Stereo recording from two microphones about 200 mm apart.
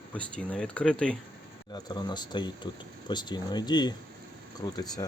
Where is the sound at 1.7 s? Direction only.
20° left (ahead or behind).